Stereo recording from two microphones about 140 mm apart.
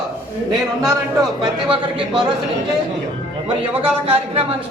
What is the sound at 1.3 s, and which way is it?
Speech, 35° right (ahead or behind).